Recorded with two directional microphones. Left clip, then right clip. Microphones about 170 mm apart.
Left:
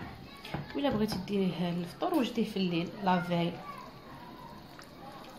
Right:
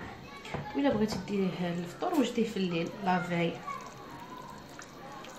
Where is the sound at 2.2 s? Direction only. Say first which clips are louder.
Right 2 dB; 30° left (ahead or behind).